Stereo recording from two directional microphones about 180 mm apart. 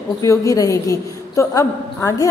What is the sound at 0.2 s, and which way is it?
A woman's voice, 20° left (ahead or behind).